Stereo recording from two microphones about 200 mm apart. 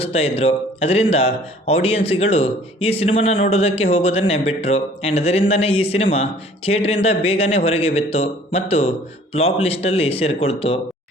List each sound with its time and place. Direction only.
0.0 s speech: 30° left (ahead or behind)